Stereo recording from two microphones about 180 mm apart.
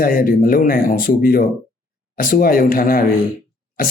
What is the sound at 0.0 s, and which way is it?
Speech, 55° left (ahead or behind).